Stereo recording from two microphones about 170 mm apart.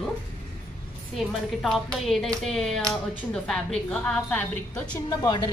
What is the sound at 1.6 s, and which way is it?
A woman's voice, centre (ahead or behind).